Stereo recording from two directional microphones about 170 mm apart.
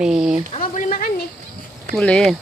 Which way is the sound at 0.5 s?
45° left (ahead or behind).